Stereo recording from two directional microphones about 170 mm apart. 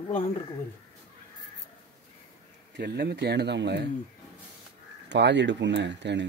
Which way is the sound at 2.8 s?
75° right (ahead or behind).